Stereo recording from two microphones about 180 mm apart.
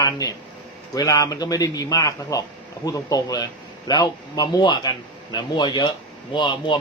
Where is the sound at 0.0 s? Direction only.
20° left (ahead or behind).